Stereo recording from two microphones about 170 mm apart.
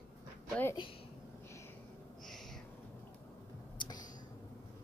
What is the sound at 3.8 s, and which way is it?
Clicking, 25° left (ahead or behind).